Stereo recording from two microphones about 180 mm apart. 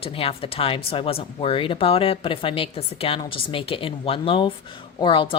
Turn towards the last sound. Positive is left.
turn(degrees=25)  # may be behind; listen again after turning